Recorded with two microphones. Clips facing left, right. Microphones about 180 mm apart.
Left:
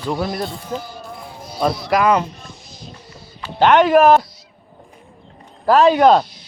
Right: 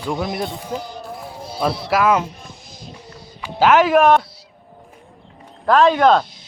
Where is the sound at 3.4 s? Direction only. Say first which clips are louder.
Left 1 dB; 5° right (ahead or behind).